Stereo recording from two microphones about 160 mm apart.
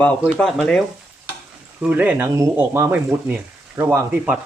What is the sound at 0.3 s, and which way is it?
Speech, 5° left (ahead or behind).